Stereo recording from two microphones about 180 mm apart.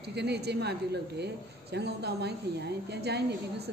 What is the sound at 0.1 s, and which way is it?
A woman's voice, 65° right (ahead or behind).